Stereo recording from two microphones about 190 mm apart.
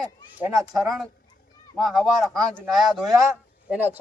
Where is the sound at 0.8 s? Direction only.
Centre (ahead or behind).